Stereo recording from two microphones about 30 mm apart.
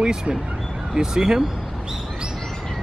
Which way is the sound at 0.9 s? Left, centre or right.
Right.